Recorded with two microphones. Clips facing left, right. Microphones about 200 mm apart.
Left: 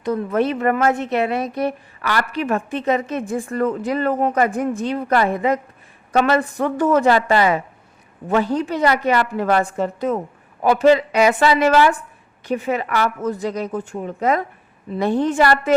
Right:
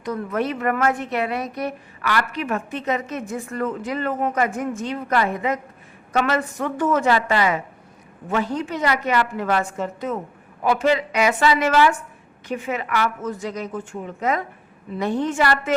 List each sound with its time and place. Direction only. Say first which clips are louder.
0.0 s a woman's voice: left 5 dB; 30° left (ahead or behind)